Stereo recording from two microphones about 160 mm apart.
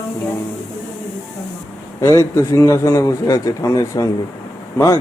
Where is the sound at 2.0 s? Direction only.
15° left (ahead or behind).